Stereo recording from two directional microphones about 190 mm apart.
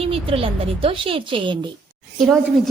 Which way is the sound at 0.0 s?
30° right (ahead or behind).